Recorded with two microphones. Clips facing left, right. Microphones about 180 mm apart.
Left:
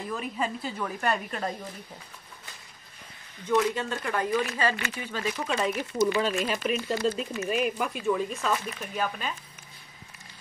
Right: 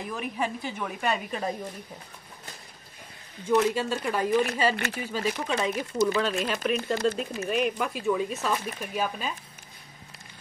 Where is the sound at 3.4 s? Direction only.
10° right (ahead or behind).